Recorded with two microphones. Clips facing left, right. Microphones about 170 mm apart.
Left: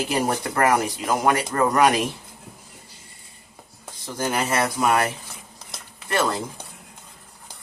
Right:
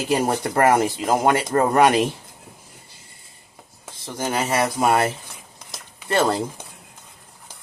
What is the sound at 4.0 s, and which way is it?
Speech, 20° right (ahead or behind).